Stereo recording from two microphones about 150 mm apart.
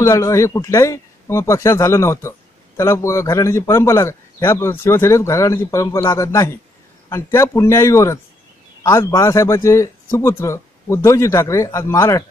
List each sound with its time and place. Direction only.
0.0 s a man's voice: 20° left (ahead or behind)